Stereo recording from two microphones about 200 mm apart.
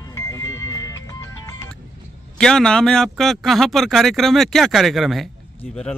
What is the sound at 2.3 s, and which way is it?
A man's voice, 5° left (ahead or behind).